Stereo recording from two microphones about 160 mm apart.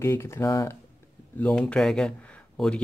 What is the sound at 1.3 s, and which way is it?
Speech, 5° left (ahead or behind).